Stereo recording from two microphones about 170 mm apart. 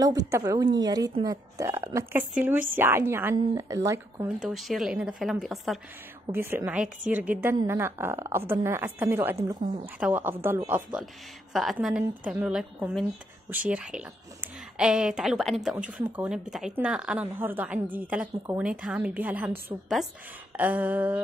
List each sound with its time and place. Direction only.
0.0 s a woman's voice: 20° right (ahead or behind)
4.4 s a woman's voice: centre (ahead or behind)
6.3 s a woman's voice: 15° right (ahead or behind)